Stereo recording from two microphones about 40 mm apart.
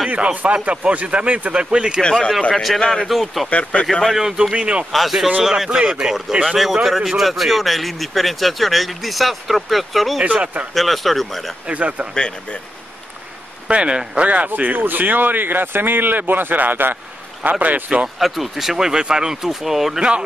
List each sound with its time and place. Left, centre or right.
0.1 s speech: right
2.0 s speech: centre
2.5 s speech: centre
3.4 s speech: left
4.2 s speech: centre
4.6 s speech: right
4.9 s speech: centre
6.4 s speech: centre
11.7 s speech: right
13.7 s speech: right
14.5 s speech: right
17.4 s speech: right
17.8 s speech: right
18.2 s speech: centre